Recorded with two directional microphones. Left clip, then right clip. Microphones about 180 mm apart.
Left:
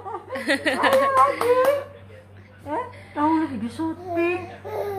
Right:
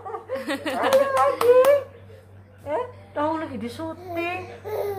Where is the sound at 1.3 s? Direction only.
20° right (ahead or behind).